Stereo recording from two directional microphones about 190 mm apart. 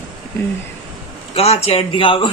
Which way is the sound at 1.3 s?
35° left (ahead or behind).